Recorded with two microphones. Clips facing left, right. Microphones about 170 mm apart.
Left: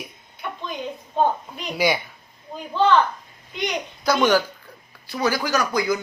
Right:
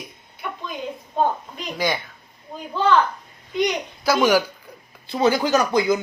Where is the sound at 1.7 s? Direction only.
10° left (ahead or behind).